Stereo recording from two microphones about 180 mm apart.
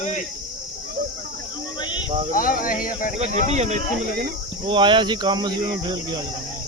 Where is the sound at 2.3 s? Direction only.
50° left (ahead or behind).